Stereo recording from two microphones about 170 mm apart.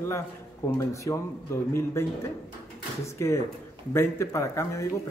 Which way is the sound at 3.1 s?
15° left (ahead or behind).